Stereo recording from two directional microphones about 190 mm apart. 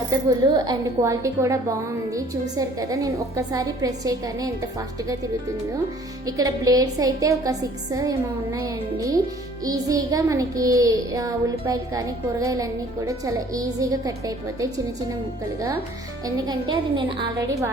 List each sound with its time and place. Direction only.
0.1 s child singing: 20° right (ahead or behind)
2.1 s a woman's voice: 15° right (ahead or behind)
6.2 s a woman's voice: 20° right (ahead or behind)
8.5 s child singing: 20° right (ahead or behind)
16.2 s a woman's voice: 20° right (ahead or behind)